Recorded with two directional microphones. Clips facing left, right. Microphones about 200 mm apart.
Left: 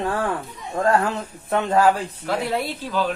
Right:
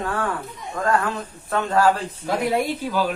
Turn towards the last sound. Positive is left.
turn(degrees=-10)  # may be behind; listen again after turning